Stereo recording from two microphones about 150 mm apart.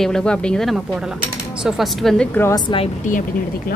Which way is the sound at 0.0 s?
5° left (ahead or behind).